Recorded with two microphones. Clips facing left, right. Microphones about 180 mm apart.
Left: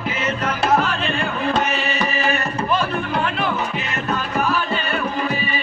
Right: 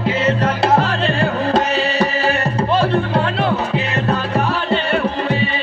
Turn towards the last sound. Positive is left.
turn(degrees=-30)  # may be behind; listen again after turning